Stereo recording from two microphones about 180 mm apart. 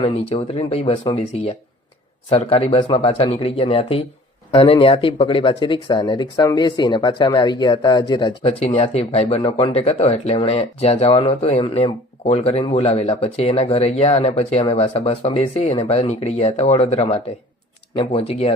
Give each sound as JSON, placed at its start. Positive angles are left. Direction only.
{"t": 0.0, "sound": "speech", "side_deg": 30}